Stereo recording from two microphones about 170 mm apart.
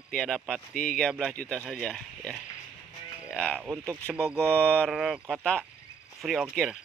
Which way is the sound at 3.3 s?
5° left (ahead or behind).